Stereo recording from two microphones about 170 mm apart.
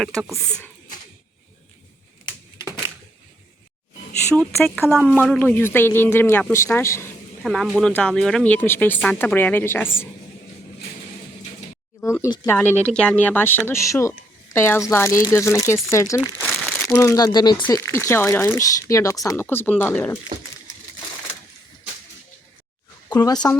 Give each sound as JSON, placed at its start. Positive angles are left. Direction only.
{"t": 0.0, "sound": "speech", "side_deg": 5}
{"t": 2.2, "sound": "typewriter", "side_deg": 25}
{"t": 4.3, "sound": "speech", "side_deg": 5}
{"t": 7.4, "sound": "speech", "side_deg": 0}
{"t": 11.9, "sound": "speech", "side_deg": 15}
{"t": 12.5, "sound": "speech", "side_deg": 10}
{"t": 16.4, "sound": "crumpling", "side_deg": 0}
{"t": 16.9, "sound": "speech", "side_deg": 15}
{"t": 17.7, "sound": "speech", "side_deg": 15}
{"t": 23.0, "sound": "speech", "side_deg": 25}